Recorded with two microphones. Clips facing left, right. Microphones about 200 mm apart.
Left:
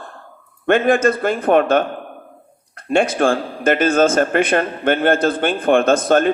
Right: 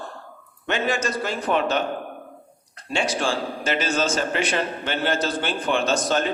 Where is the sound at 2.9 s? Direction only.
55° left (ahead or behind).